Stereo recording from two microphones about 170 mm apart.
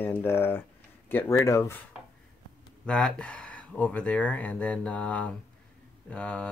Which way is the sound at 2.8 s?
5° left (ahead or behind).